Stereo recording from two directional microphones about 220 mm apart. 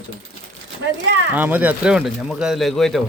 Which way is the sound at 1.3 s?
10° right (ahead or behind).